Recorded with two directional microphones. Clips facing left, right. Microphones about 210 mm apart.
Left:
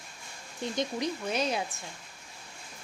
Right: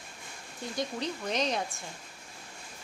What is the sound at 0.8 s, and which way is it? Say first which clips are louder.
Speech: left 2 dB; 10° left (ahead or behind).